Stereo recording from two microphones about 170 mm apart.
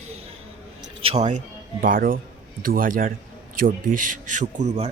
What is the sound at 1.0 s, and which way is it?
Speech, 40° right (ahead or behind).